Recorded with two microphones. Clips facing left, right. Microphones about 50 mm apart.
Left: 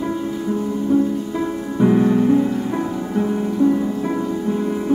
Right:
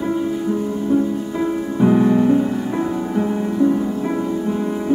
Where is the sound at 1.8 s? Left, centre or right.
Centre.